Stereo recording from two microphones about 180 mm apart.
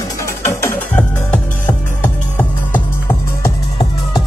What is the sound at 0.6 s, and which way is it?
Music, 10° left (ahead or behind).